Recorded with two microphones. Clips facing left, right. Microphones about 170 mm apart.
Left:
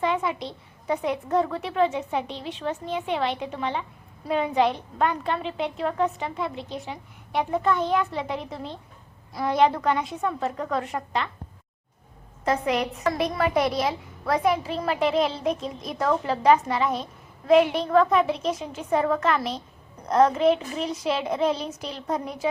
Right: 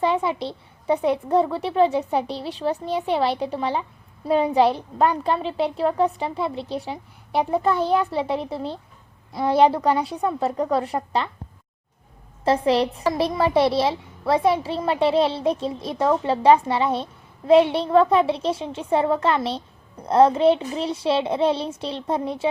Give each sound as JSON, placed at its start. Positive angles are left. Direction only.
{"t": 0.0, "sound": "a woman's voice", "side_deg": -30}
{"t": 12.5, "sound": "a woman's voice", "side_deg": -30}